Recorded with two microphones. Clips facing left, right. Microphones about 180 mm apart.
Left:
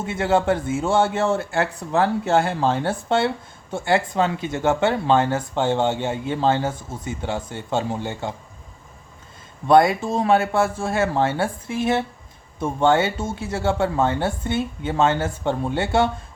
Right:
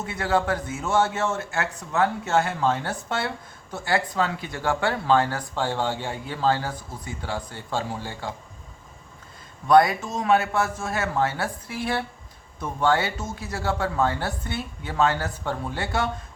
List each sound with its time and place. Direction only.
0.0 s a man's voice: 25° left (ahead or behind)
9.6 s a man's voice: 25° left (ahead or behind)